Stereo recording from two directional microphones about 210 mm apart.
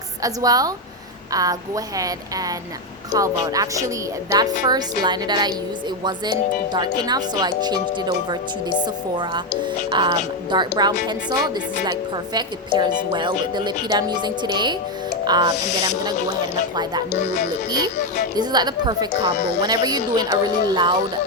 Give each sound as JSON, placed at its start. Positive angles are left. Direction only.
{"t": 0.2, "sound": "a woman's voice", "side_deg": -15}
{"t": 9.9, "sound": "a woman's voice", "side_deg": -20}
{"t": 18.3, "sound": "a woman's voice", "side_deg": -20}